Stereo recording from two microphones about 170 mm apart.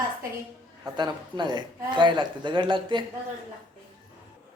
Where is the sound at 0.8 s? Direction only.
25° right (ahead or behind).